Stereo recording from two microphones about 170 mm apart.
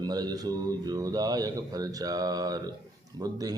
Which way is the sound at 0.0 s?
25° right (ahead or behind).